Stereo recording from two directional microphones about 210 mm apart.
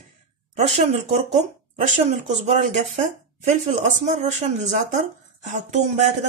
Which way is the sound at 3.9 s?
35° right (ahead or behind).